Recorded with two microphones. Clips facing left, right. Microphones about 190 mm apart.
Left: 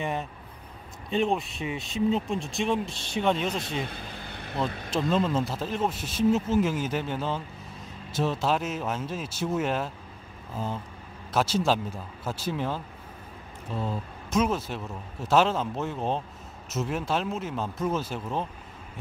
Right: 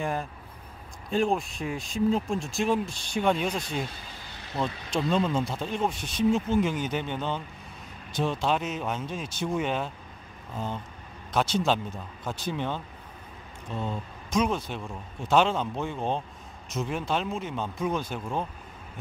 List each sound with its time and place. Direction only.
0.0 s speech: centre (ahead or behind)
3.8 s vehicle: 60° left (ahead or behind)
4.6 s speech: centre (ahead or behind)